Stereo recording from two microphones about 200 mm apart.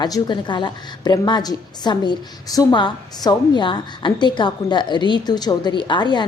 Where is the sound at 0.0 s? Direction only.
20° left (ahead or behind).